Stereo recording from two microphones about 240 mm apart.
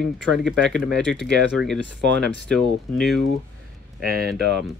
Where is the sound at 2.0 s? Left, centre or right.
Right.